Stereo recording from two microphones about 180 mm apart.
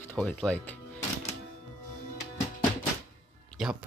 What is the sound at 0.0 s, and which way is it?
Speech, 10° left (ahead or behind).